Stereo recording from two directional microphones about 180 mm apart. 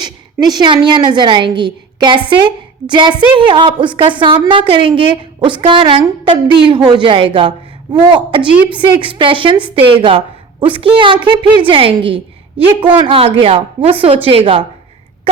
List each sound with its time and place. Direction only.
0.0 s a woman's voice: 25° right (ahead or behind)